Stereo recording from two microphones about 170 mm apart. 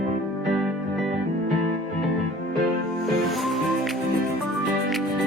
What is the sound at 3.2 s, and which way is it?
Music, centre (ahead or behind).